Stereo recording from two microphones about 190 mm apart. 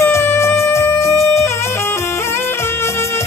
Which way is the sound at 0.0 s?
15° left (ahead or behind).